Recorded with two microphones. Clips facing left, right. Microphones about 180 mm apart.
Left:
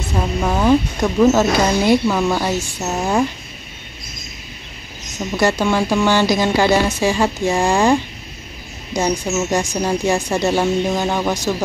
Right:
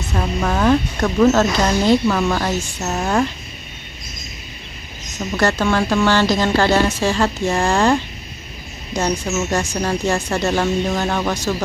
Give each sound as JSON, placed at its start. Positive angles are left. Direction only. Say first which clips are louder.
{"t": 0.4, "sound": "speech", "louder": "left 1 dB", "side_deg": 10}
{"t": 5.3, "sound": "speech", "louder": "left 1 dB", "side_deg": 10}